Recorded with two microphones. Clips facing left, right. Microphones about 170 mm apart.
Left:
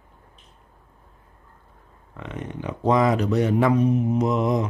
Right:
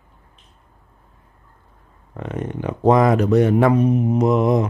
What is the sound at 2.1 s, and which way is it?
Speech, 45° right (ahead or behind).